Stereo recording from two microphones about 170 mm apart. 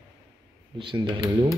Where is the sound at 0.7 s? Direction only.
25° right (ahead or behind).